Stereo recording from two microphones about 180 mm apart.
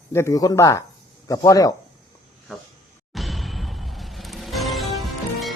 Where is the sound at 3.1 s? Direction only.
Centre (ahead or behind).